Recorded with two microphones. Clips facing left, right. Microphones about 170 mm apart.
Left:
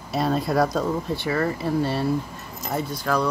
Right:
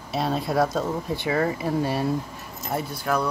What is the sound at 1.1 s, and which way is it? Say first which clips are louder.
Speech: even; 15° right (ahead or behind).